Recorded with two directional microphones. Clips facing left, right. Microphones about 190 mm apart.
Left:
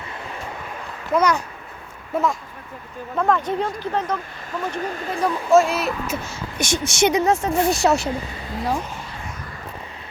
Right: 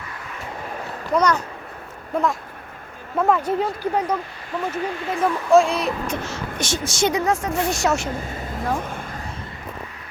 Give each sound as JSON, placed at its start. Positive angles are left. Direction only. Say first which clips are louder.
{"t": 1.1, "sound": "a child's voice", "louder": "even", "side_deg": 10}
{"t": 3.2, "sound": "speech", "louder": "right 1 dB", "side_deg": -10}
{"t": 4.8, "sound": "speech", "louder": "right 1 dB", "side_deg": 45}
{"t": 5.2, "sound": "speech", "louder": "even", "side_deg": 0}
{"t": 6.8, "sound": "a woman's voice", "louder": "left 3 dB", "side_deg": 25}
{"t": 8.3, "sound": "speech", "louder": "even", "side_deg": -50}